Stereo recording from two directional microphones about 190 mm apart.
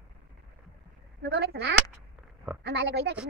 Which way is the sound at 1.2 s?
65° right (ahead or behind).